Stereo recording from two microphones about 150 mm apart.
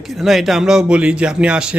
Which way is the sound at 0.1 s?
Centre (ahead or behind).